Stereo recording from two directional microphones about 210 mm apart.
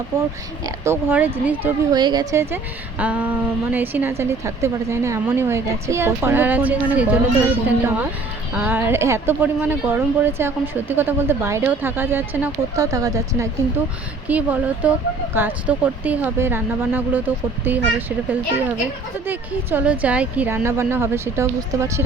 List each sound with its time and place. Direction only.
0.6 s a woman's voice: 10° right (ahead or behind)
2.0 s a woman's voice: 20° right (ahead or behind)
19.3 s a woman's voice: 5° right (ahead or behind)